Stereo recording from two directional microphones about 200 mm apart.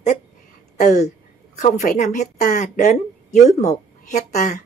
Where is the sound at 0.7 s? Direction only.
35° left (ahead or behind).